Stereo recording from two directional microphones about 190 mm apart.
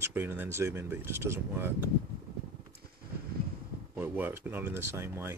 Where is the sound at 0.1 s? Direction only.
10° right (ahead or behind).